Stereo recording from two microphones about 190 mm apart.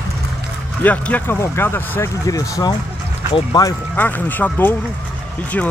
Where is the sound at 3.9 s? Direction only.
10° left (ahead or behind).